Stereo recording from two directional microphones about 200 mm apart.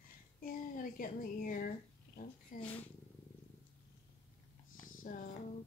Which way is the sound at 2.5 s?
40° left (ahead or behind).